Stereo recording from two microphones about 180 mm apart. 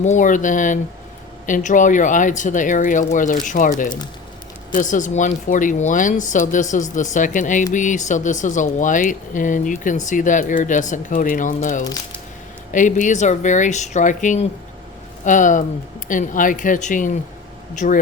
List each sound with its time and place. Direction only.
0.0 s speech: 45° left (ahead or behind)